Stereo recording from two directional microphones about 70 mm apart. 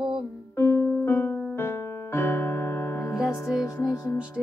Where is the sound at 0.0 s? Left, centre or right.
Centre.